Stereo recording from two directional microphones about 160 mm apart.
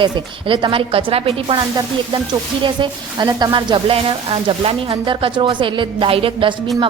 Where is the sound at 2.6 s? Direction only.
30° right (ahead or behind).